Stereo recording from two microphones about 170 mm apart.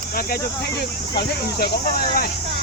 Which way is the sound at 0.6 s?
70° left (ahead or behind).